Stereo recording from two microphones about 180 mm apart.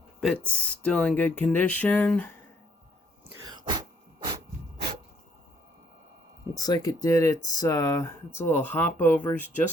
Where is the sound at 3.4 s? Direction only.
25° right (ahead or behind).